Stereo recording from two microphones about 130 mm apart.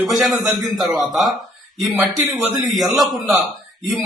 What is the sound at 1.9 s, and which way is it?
Speech, 15° right (ahead or behind).